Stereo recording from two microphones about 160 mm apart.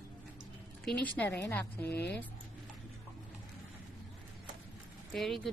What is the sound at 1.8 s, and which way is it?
Speech, 90° left.